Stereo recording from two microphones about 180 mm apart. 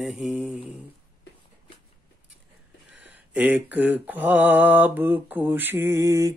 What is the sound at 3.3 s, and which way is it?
Mantra, 5° right (ahead or behind).